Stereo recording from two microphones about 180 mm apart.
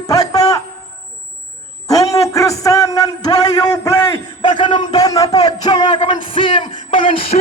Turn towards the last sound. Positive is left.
turn(degrees=30)  # may be behind; listen again after turning